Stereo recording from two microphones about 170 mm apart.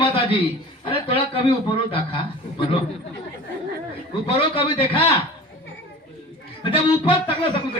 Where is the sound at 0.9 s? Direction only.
35° left (ahead or behind).